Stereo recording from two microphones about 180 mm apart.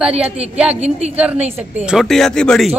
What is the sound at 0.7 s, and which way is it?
Speech, 35° right (ahead or behind).